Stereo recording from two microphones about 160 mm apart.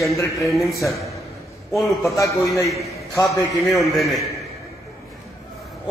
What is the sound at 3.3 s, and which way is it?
Speech, 20° left (ahead or behind).